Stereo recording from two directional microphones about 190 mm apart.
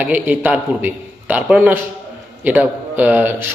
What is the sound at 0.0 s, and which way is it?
A man's voice, 10° right (ahead or behind).